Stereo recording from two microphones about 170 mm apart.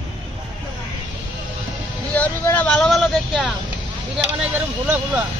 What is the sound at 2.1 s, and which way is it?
Vehicle, 10° left (ahead or behind).